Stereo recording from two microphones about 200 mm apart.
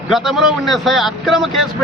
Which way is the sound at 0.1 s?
Centre (ahead or behind).